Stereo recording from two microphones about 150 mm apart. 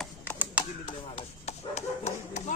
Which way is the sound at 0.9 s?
45° left (ahead or behind).